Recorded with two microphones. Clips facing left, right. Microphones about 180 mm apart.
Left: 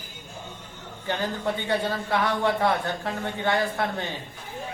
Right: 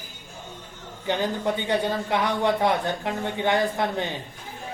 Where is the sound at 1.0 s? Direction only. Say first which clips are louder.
Right 3 dB; 15° right (ahead or behind).